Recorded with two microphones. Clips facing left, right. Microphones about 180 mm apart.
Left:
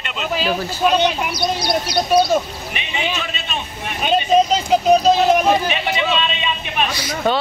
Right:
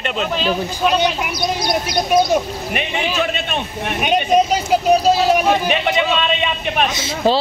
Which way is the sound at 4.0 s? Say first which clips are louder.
Even; 15° right (ahead or behind).